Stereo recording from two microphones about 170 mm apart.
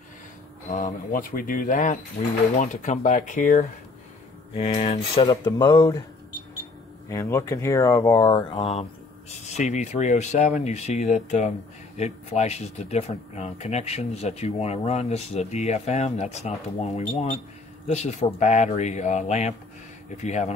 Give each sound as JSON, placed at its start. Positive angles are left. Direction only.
{"t": 0.7, "sound": "speech", "side_deg": 50}
{"t": 7.1, "sound": "speech", "side_deg": 15}